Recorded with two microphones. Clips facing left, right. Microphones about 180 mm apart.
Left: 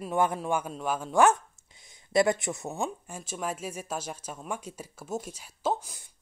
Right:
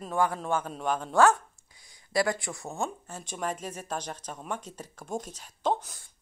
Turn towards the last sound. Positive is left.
turn(degrees=5)  # may be behind; listen again after turning